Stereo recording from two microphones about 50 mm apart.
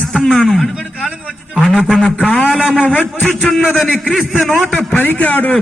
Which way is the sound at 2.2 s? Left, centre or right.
Left.